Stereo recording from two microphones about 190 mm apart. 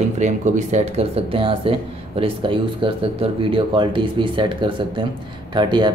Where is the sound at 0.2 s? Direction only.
40° right (ahead or behind).